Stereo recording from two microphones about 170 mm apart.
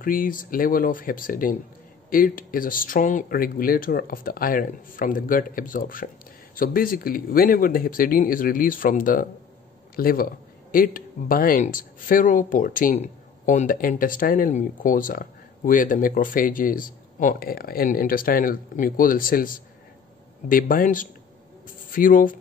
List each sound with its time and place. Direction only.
0.0 s a man's voice: 55° left (ahead or behind)